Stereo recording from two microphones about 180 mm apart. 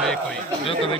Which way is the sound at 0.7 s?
30° left (ahead or behind).